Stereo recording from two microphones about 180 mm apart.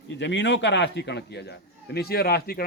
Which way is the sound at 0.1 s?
80° left.